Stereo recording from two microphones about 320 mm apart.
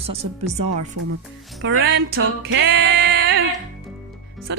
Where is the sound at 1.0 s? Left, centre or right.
Right.